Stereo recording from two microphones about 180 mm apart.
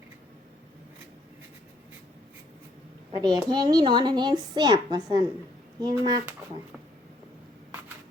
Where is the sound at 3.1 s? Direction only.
25° right (ahead or behind).